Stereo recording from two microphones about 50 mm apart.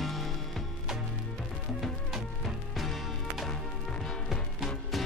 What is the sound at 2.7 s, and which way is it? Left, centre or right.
Music, centre.